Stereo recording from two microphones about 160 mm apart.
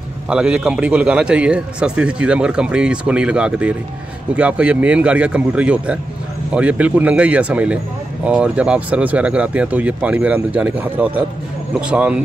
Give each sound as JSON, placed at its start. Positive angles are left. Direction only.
{"t": 0.3, "sound": "a man's voice", "side_deg": -5}